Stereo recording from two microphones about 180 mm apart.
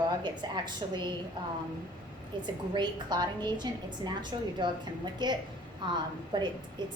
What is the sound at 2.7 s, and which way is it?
A woman's voice, 25° right (ahead or behind).